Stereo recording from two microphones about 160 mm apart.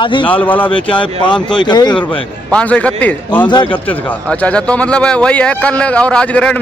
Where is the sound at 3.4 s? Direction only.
30° left (ahead or behind).